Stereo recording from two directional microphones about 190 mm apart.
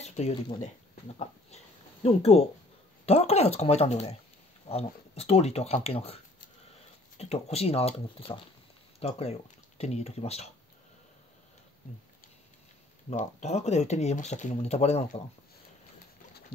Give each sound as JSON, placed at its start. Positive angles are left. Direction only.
{"t": 0.0, "sound": "a sound", "side_deg": 35}
{"t": 2.0, "sound": "speech", "side_deg": 35}
{"t": 13.1, "sound": "speech", "side_deg": 35}